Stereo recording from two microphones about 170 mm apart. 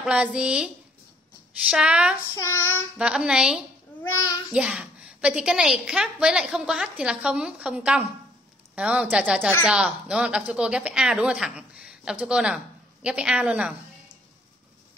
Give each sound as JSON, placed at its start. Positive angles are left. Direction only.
{"t": 0.0, "sound": "a woman's voice", "side_deg": -5}
{"t": 1.7, "sound": "a woman's voice", "side_deg": -5}
{"t": 2.3, "sound": "child singing", "side_deg": 20}
{"t": 3.0, "sound": "a woman's voice", "side_deg": -5}
{"t": 4.0, "sound": "a child's voice", "side_deg": 15}
{"t": 4.5, "sound": "a woman's voice", "side_deg": -5}